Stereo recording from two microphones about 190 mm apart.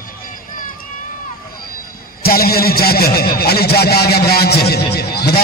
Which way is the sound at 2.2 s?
55° left (ahead or behind).